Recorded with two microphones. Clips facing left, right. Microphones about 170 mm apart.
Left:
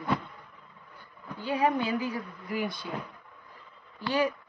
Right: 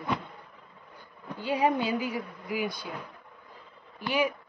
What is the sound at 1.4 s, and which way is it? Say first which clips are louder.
A woman's voice: right 1 dB; 15° right (ahead or behind).